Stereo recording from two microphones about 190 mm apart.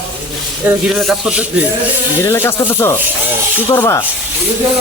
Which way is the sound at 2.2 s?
10° left (ahead or behind).